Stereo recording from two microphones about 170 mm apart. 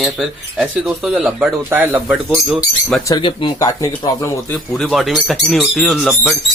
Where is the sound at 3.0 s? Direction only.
25° left (ahead or behind).